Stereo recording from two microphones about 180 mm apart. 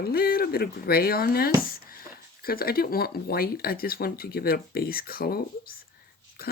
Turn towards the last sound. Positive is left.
turn(degrees=55)  # may be behind; listen again after turning